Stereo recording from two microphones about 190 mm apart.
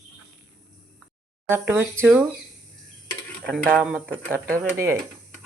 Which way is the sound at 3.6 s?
5° left (ahead or behind).